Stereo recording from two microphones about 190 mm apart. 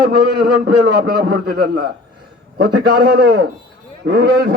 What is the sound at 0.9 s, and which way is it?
A man's voice, 55° right (ahead or behind).